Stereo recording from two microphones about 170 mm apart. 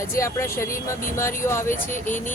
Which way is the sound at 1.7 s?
50° left (ahead or behind).